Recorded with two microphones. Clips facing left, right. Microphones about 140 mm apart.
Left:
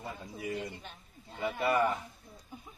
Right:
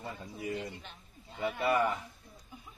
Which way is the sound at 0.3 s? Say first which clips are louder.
Even; 15° left (ahead or behind).